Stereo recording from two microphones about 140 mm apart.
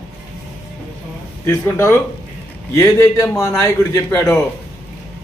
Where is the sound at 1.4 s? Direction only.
20° left (ahead or behind).